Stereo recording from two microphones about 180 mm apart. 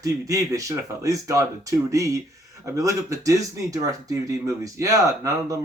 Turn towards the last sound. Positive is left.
turn(degrees=-20)  # may be behind; listen again after turning